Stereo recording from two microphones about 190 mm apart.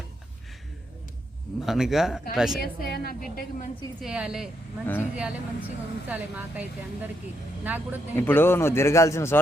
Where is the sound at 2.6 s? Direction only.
50° left (ahead or behind).